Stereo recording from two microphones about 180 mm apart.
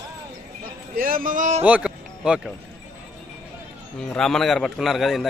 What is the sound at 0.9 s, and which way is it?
Speech, 50° right (ahead or behind).